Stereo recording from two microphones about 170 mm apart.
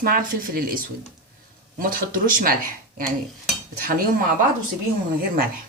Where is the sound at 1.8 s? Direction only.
55° right (ahead or behind).